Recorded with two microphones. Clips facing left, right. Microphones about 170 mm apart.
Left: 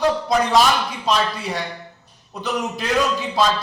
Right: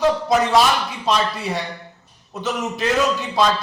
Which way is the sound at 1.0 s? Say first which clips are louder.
Right 1 dB; centre (ahead or behind).